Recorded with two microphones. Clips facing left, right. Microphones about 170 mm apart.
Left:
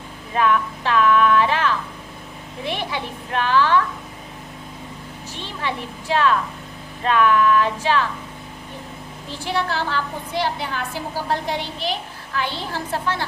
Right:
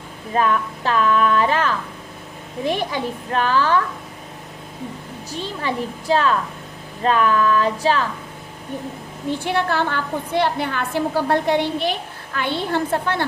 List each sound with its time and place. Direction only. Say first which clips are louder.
0.3 s a child's voice: even; 40° right (ahead or behind)
5.3 s a woman's voice: right 3 dB; 40° right (ahead or behind)
9.4 s a woman's voice: right 1 dB; 55° right (ahead or behind)